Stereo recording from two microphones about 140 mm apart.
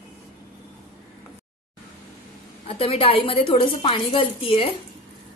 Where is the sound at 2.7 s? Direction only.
40° left (ahead or behind).